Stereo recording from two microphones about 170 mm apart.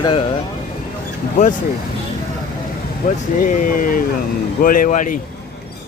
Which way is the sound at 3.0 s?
60° left (ahead or behind).